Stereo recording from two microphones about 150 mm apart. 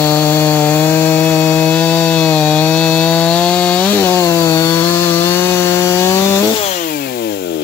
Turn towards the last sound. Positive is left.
turn(degrees=90)